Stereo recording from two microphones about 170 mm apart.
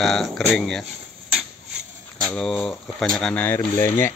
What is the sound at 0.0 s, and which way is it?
Speech, centre (ahead or behind).